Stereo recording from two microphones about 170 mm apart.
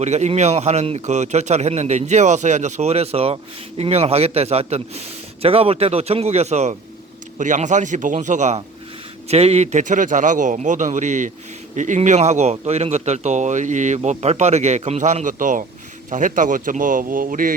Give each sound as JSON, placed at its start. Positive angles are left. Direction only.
{"t": 0.0, "sound": "a man's voice", "side_deg": -40}